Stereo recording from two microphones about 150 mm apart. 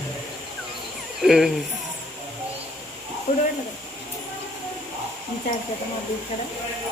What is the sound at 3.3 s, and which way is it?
Speech, 75° left (ahead or behind).